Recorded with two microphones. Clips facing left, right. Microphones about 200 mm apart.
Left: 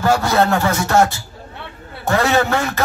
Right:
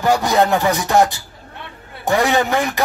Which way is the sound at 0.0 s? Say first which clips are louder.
Even; 15° right (ahead or behind).